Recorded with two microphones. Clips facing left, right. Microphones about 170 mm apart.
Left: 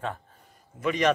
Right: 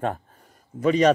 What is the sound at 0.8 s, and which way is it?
Speech, 35° right (ahead or behind).